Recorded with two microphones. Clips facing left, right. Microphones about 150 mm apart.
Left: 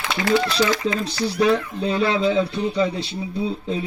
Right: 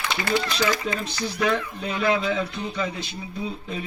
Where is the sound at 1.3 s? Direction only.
35° left (ahead or behind).